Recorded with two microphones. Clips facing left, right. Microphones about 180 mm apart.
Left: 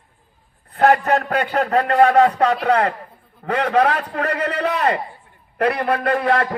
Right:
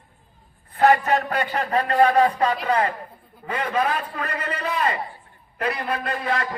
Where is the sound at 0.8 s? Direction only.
65° left (ahead or behind).